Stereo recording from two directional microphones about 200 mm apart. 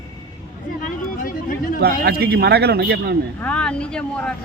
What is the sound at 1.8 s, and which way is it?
A man's voice, 50° right (ahead or behind).